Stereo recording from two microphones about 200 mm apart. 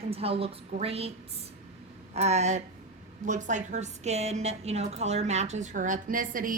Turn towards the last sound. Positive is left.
turn(degrees=-40)  # may be behind; listen again after turning